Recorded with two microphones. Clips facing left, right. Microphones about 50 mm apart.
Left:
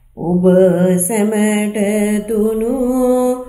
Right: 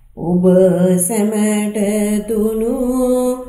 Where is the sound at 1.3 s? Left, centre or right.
Left.